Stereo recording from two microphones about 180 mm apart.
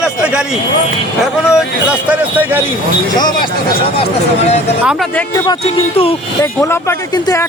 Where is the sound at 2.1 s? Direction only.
10° right (ahead or behind).